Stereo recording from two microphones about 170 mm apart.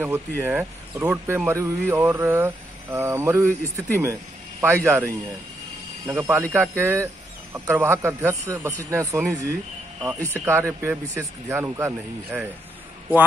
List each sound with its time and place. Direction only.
0.4 s speech: 15° right (ahead or behind)